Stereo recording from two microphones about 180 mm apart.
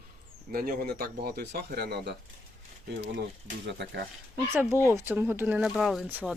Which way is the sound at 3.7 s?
70° right (ahead or behind).